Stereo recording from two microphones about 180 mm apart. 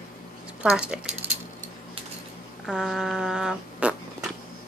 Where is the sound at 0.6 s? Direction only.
5° right (ahead or behind).